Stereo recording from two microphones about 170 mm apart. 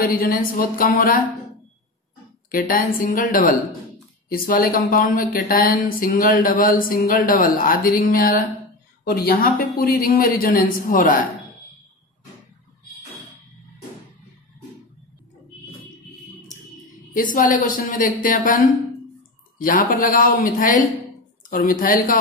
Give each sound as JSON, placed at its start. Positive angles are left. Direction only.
{"t": 0.0, "sound": "a woman's voice", "side_deg": 60}
{"t": 3.0, "sound": "a woman's voice", "side_deg": 55}
{"t": 17.1, "sound": "a woman's voice", "side_deg": 50}